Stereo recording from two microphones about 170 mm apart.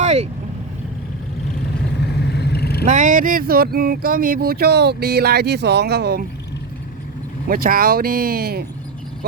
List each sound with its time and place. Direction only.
0.0 s vehicle: 40° right (ahead or behind)
2.2 s vehicle: 75° left (ahead or behind)
2.8 s speech: 45° right (ahead or behind); by 6.2 s 70° right (ahead or behind)
7.4 s speech: 60° right (ahead or behind)